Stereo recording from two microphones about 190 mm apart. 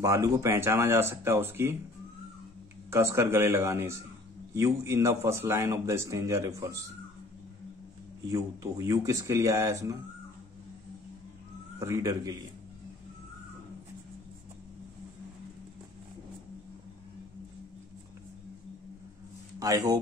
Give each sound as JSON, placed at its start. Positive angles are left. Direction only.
{"t": 0.0, "sound": "a man's voice", "side_deg": -15}
{"t": 2.9, "sound": "a man's voice", "side_deg": -15}
{"t": 8.3, "sound": "a man's voice", "side_deg": -20}
{"t": 11.8, "sound": "a man's voice", "side_deg": -15}
{"t": 19.6, "sound": "speech", "side_deg": -20}